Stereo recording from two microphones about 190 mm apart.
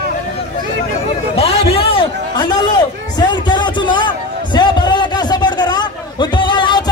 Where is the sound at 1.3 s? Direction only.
30° left (ahead or behind).